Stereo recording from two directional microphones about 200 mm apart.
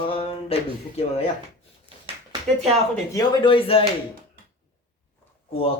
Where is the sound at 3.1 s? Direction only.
20° left (ahead or behind).